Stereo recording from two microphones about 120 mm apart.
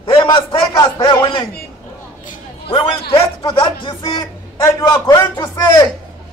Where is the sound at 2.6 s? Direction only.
50° left (ahead or behind).